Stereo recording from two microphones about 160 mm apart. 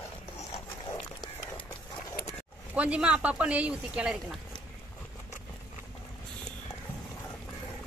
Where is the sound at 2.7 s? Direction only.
5° right (ahead or behind).